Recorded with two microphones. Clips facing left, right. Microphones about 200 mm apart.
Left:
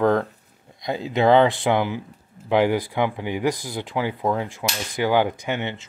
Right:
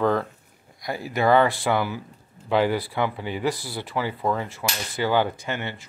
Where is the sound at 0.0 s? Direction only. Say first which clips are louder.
Left 3 dB; 15° left (ahead or behind).